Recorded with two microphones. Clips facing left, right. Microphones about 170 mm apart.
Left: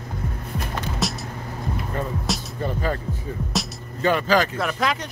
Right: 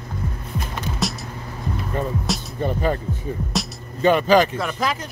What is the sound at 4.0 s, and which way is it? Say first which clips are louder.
Speech: right 4 dB; 20° right (ahead or behind).